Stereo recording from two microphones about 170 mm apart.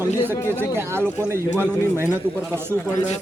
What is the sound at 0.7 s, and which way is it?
Speech, 15° right (ahead or behind).